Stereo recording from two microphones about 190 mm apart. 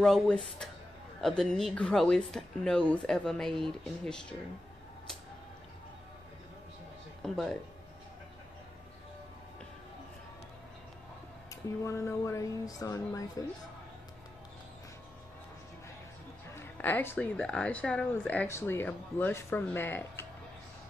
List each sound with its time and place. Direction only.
0.0 s speech: centre (ahead or behind)
7.2 s speech: 5° left (ahead or behind)
11.8 s speech: 15° left (ahead or behind)
16.5 s speech: 10° left (ahead or behind)